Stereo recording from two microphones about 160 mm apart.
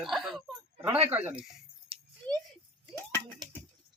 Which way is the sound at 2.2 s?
10° left (ahead or behind).